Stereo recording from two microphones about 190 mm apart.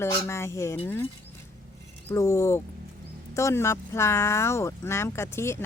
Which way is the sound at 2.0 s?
15° left (ahead or behind).